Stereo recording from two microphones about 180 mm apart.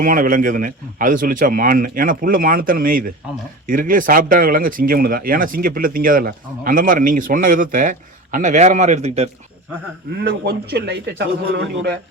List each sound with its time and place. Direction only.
0.0 s speech: 50° right (ahead or behind)
10.2 s a man's voice: 65° right (ahead or behind)